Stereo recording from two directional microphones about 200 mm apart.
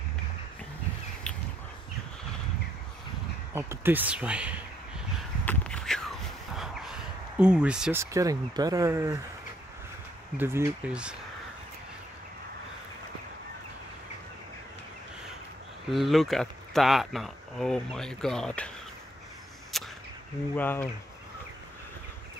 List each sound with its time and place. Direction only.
3.5 s speech: 10° right (ahead or behind)
5.4 s a sound: 5° left (ahead or behind)
8.0 s speech: 15° right (ahead or behind)
10.3 s speech: 10° right (ahead or behind)
15.9 s speech: centre (ahead or behind)
19.7 s a sound: centre (ahead or behind)
20.5 s speech: 10° left (ahead or behind)